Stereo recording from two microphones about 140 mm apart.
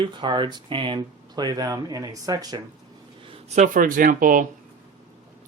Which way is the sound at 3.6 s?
75° right (ahead or behind).